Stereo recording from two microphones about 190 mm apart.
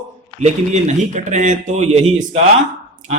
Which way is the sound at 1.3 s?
40° right (ahead or behind).